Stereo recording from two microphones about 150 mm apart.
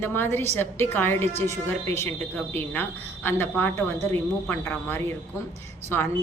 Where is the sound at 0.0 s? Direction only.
15° left (ahead or behind).